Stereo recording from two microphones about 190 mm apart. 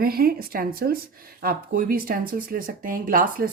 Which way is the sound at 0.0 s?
55° right (ahead or behind).